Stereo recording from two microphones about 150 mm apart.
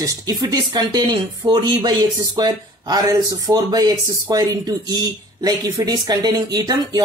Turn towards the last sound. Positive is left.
turn(degrees=-25)  # may be behind; listen again after turning